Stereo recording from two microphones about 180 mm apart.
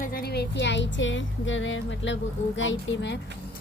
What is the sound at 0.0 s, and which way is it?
Music, 55° left (ahead or behind).